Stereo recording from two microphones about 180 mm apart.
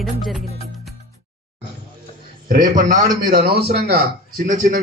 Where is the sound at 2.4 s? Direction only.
50° right (ahead or behind).